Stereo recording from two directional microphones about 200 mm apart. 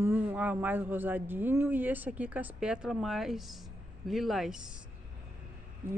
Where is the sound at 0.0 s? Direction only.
10° right (ahead or behind).